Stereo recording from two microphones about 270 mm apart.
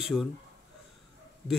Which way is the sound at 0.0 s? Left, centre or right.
Centre.